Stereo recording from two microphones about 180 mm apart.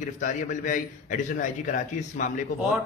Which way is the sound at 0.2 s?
45° left (ahead or behind).